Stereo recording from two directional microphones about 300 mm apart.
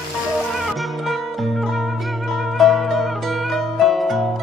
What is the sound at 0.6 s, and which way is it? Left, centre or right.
Music, centre.